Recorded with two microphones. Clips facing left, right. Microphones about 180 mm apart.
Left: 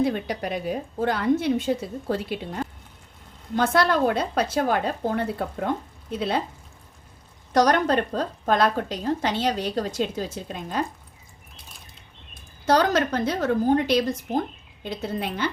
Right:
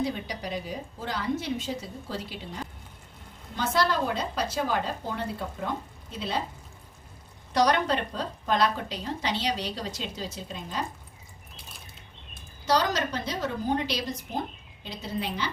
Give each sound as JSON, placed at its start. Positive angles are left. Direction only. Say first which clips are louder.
{"t": 0.0, "sound": "a woman's voice", "louder": "left 6 dB", "side_deg": 55}
{"t": 7.5, "sound": "a woman's voice", "louder": "left 4 dB", "side_deg": 45}
{"t": 12.6, "sound": "a woman's voice", "louder": "left 5 dB", "side_deg": 55}